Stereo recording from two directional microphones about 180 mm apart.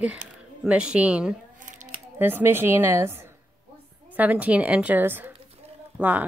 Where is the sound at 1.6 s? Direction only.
45° right (ahead or behind).